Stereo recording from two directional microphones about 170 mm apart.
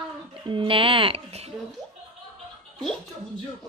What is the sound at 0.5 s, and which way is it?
Speech, 30° right (ahead or behind).